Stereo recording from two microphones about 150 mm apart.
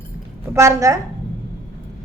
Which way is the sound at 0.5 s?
20° right (ahead or behind).